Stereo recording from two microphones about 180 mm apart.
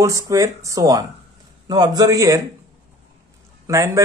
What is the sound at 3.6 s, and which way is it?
Speech, 15° right (ahead or behind).